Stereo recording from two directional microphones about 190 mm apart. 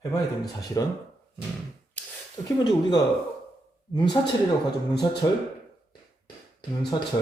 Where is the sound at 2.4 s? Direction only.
20° left (ahead or behind).